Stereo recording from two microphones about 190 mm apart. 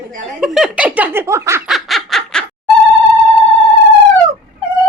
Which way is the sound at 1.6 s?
Centre (ahead or behind).